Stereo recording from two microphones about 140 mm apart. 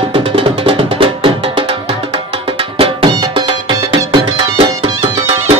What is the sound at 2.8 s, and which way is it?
Music, 35° right (ahead or behind).